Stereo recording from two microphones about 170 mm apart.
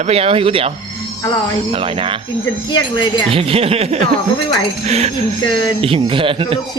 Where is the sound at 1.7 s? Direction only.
30° right (ahead or behind).